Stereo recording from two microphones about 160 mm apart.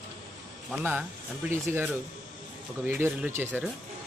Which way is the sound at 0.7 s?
10° right (ahead or behind).